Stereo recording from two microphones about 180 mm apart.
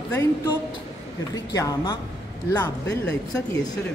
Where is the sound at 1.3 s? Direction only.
20° left (ahead or behind).